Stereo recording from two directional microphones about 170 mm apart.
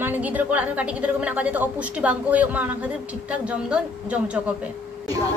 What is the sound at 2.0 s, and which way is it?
Speech, 10° right (ahead or behind).